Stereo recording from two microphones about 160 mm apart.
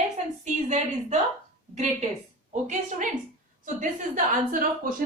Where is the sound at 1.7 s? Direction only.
45° right (ahead or behind); by 5.0 s 60° right (ahead or behind).